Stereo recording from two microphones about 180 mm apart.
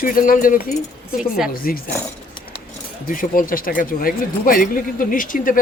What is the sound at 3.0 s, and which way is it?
Speech, 50° left (ahead or behind).